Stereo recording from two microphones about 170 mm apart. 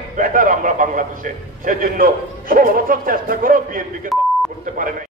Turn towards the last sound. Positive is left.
turn(degrees=-50)  # may be behind; listen again after turning